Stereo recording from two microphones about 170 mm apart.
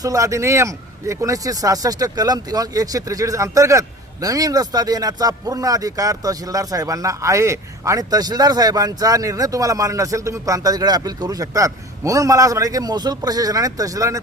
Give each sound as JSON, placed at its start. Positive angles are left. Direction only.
{"t": 0.0, "sound": "speech", "side_deg": -20}